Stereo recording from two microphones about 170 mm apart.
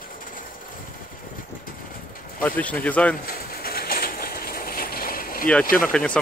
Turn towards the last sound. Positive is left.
turn(degrees=5)  # may be behind; listen again after turning